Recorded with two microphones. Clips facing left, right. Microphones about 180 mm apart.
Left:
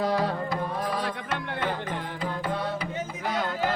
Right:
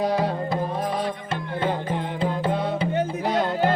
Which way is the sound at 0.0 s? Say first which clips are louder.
Right 3 dB; 20° right (ahead or behind).